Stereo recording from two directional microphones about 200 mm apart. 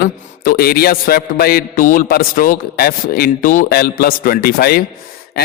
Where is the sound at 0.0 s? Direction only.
50° left (ahead or behind).